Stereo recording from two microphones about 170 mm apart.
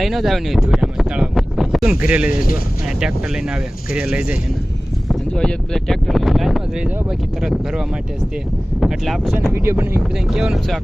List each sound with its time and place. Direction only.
0.0 s speech: centre (ahead or behind)
5.0 s speech: 5° left (ahead or behind)
9.5 s speech: 15° right (ahead or behind)
10.2 s speech: centre (ahead or behind)